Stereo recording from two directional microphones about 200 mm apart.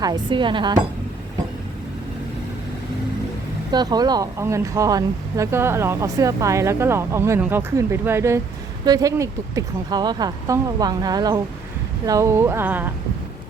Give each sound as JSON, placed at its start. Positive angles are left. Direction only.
{"t": 0.0, "sound": "speech", "side_deg": -20}
{"t": 3.7, "sound": "speech", "side_deg": -20}